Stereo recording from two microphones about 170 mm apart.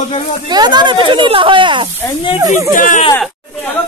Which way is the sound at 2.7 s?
50° left (ahead or behind).